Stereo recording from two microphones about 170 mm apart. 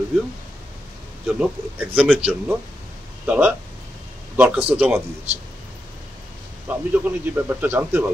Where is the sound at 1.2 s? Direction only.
5° right (ahead or behind).